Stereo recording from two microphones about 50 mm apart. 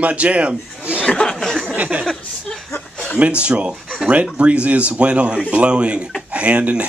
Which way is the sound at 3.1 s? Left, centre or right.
Right.